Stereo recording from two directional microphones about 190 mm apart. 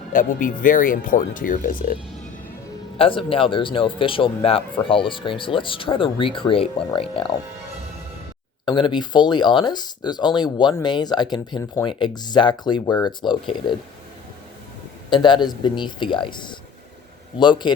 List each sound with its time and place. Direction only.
0.1 s speech: 45° left (ahead or behind)
3.0 s speech: 30° left (ahead or behind)
8.6 s speech: 25° left (ahead or behind)
15.1 s speech: 25° left (ahead or behind)
17.6 s speech: 25° left (ahead or behind)